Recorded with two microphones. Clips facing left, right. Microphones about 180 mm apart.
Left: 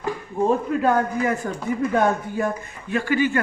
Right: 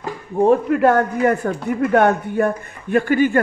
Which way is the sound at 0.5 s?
70° right (ahead or behind).